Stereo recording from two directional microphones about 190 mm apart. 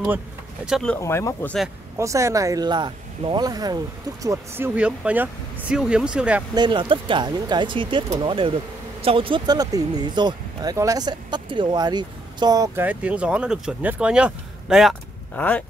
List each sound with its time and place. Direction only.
0.7 s speech: centre (ahead or behind)
0.9 s speech: 15° left (ahead or behind)
2.0 s speech: 15° right (ahead or behind)
6.5 s speech: 25° right (ahead or behind); by 15.6 s 5° left (ahead or behind)